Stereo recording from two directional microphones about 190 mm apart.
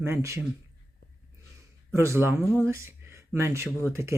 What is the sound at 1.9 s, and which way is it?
Speech, 15° right (ahead or behind).